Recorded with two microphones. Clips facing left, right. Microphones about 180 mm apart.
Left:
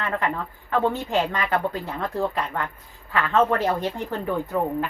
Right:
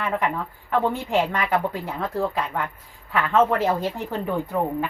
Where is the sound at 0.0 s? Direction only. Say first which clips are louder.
Right 1 dB; 10° right (ahead or behind).